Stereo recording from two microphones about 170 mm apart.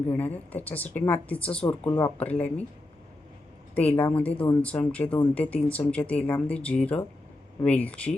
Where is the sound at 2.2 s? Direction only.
10° left (ahead or behind).